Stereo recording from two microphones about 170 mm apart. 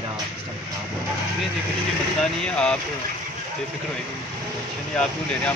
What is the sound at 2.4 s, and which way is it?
Speech, 5° left (ahead or behind).